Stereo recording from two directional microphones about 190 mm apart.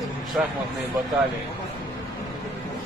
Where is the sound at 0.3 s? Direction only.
5° right (ahead or behind).